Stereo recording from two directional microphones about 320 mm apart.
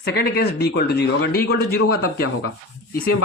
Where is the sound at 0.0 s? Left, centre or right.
Left.